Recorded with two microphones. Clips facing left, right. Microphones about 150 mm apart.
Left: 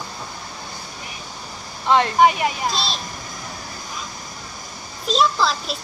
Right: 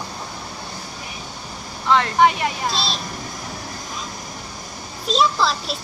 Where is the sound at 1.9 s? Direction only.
15° left (ahead or behind).